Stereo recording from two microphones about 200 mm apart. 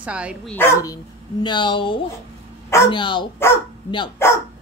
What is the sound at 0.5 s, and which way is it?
Speech, 10° left (ahead or behind).